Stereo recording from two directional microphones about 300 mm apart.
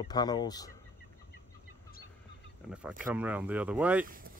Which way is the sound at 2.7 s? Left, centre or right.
Centre.